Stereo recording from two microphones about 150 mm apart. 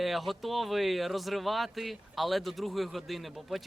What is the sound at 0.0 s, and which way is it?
Speech, centre (ahead or behind).